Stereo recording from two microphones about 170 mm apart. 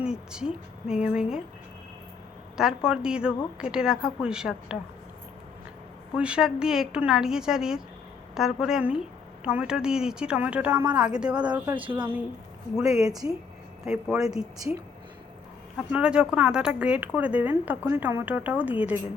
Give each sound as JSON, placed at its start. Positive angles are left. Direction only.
{"t": 0.0, "sound": "speech", "side_deg": -5}
{"t": 2.6, "sound": "speech", "side_deg": -5}
{"t": 6.1, "sound": "speech", "side_deg": -5}
{"t": 14.2, "sound": "speech", "side_deg": -5}
{"t": 15.9, "sound": "speech", "side_deg": -5}